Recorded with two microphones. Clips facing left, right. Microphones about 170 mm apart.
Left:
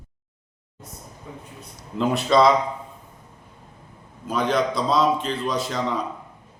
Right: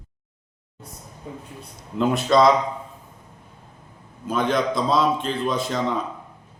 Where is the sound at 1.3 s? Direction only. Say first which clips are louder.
Right 4 dB; 30° right (ahead or behind).